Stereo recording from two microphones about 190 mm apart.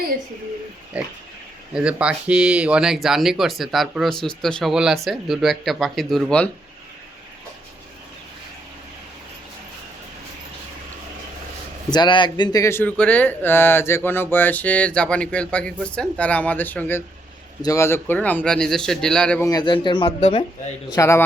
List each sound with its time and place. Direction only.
0.9 s pig: 5° right (ahead or behind)
1.7 s speech: 5° right (ahead or behind)
11.9 s speech: 25° left (ahead or behind); by 19.5 s 5° left (ahead or behind)
19.5 s speech: 20° left (ahead or behind)
20.9 s speech: 15° left (ahead or behind)